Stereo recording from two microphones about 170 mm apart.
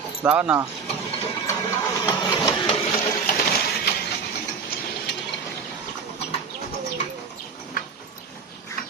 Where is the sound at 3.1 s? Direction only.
55° left (ahead or behind).